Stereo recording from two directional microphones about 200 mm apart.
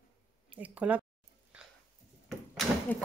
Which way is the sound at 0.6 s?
5° right (ahead or behind).